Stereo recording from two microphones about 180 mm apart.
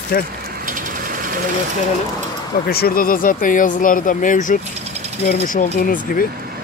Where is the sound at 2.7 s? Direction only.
55° left (ahead or behind).